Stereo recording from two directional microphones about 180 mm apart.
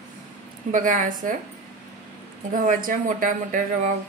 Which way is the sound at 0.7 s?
45° right (ahead or behind).